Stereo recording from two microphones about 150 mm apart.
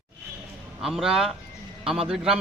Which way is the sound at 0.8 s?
Centre (ahead or behind).